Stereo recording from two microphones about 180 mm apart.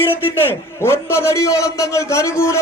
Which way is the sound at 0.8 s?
15° left (ahead or behind).